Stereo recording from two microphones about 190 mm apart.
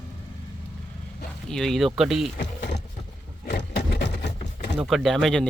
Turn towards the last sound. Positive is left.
turn(degrees=5)  # may be behind; listen again after turning